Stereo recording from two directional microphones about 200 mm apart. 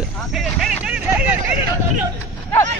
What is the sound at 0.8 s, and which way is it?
Vehicle, 5° right (ahead or behind).